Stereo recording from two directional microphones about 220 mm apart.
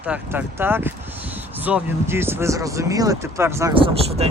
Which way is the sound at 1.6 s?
10° right (ahead or behind).